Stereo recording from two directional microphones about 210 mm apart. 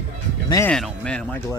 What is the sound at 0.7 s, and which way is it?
Speech, 5° left (ahead or behind).